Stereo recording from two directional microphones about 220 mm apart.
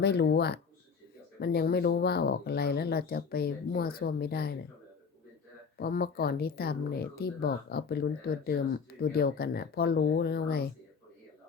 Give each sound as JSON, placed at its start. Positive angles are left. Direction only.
{"t": 0.0, "sound": "speech", "side_deg": 50}
{"t": 5.7, "sound": "speech", "side_deg": 45}